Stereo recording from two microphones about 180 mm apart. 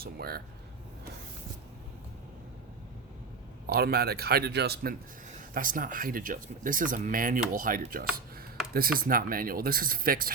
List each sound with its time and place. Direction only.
0.0 s speech: 60° right (ahead or behind)
3.7 s speech: 60° right (ahead or behind)